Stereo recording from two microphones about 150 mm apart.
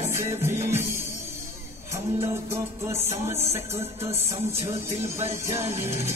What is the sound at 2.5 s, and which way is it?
Music, 15° right (ahead or behind).